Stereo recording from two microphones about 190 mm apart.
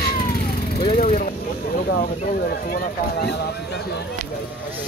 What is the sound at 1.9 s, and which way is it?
Speech, 55° left (ahead or behind).